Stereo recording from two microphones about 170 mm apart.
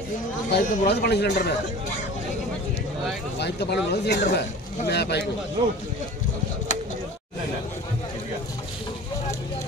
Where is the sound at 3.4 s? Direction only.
75° left (ahead or behind).